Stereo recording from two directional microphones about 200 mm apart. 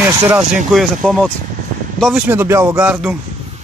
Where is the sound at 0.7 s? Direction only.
Centre (ahead or behind).